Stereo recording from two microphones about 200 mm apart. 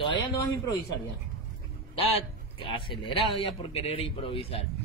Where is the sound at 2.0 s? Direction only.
30° left (ahead or behind).